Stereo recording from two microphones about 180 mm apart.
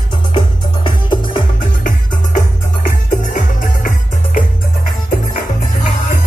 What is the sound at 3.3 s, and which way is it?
Music, 50° left (ahead or behind).